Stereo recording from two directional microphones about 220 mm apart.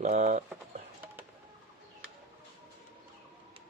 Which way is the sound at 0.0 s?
35° right (ahead or behind).